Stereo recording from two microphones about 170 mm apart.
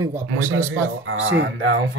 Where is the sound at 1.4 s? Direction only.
90° right.